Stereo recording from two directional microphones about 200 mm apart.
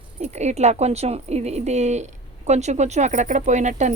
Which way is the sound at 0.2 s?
35° right (ahead or behind).